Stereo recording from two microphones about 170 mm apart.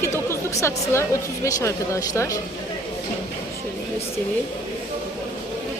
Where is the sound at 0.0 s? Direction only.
15° left (ahead or behind).